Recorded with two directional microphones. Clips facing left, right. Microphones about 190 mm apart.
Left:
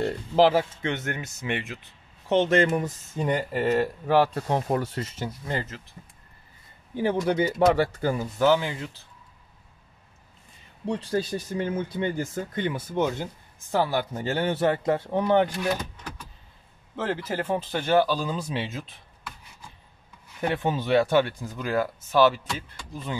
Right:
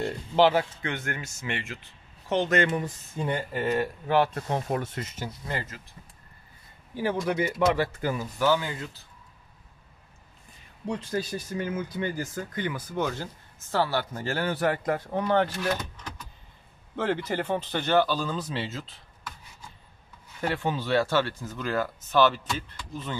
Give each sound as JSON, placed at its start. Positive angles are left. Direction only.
{"t": 0.0, "sound": "speech", "side_deg": 35}
{"t": 7.2, "sound": "speech", "side_deg": 30}
{"t": 10.9, "sound": "speech", "side_deg": 30}
{"t": 16.9, "sound": "speech", "side_deg": 5}
{"t": 20.3, "sound": "speech", "side_deg": 20}